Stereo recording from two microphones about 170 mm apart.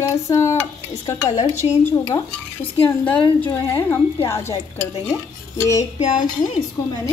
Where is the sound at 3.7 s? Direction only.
15° left (ahead or behind).